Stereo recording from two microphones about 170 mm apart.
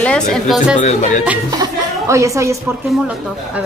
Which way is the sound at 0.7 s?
45° left (ahead or behind).